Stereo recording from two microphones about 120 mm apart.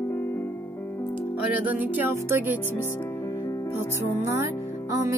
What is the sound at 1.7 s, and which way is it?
Music, 15° right (ahead or behind).